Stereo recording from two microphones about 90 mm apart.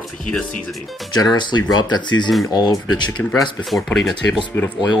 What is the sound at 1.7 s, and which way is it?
Speech, 55° left (ahead or behind).